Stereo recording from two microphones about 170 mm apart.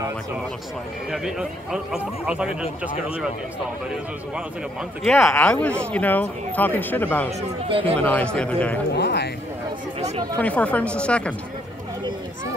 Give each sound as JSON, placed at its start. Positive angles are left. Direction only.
{"t": 1.1, "sound": "speech", "side_deg": -5}
{"t": 5.0, "sound": "speech", "side_deg": 0}
{"t": 7.2, "sound": "speech", "side_deg": -35}
{"t": 8.0, "sound": "speech", "side_deg": 10}
{"t": 8.9, "sound": "speech", "side_deg": 80}
{"t": 9.9, "sound": "speech", "side_deg": -35}
{"t": 10.3, "sound": "speech", "side_deg": 10}